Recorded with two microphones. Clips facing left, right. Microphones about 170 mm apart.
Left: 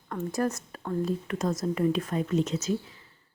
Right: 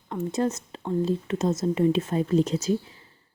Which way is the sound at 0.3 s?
20° right (ahead or behind).